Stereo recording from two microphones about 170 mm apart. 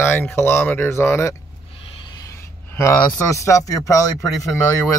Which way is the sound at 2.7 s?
15° left (ahead or behind).